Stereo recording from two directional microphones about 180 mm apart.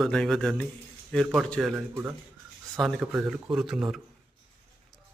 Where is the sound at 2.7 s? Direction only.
Centre (ahead or behind).